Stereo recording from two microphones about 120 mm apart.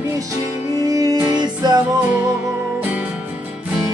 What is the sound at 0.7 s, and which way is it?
Music, 30° right (ahead or behind).